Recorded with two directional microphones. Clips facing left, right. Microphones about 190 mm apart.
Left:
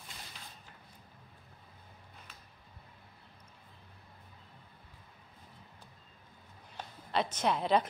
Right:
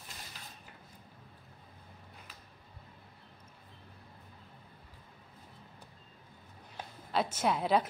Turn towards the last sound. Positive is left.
turn(degrees=-5)  # may be behind; listen again after turning